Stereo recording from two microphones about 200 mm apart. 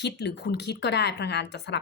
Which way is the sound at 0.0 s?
55° left (ahead or behind).